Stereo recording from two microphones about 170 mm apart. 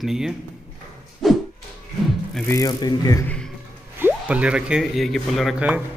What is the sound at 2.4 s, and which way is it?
Speech, 20° left (ahead or behind).